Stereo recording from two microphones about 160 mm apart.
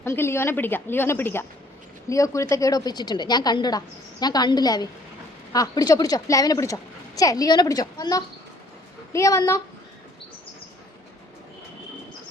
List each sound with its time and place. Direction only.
0.0 s a woman's voice: 15° left (ahead or behind)